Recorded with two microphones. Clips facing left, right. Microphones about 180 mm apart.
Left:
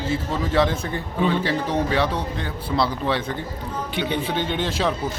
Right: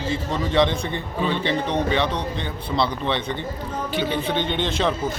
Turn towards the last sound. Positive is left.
turn(degrees=5)  # may be behind; listen again after turning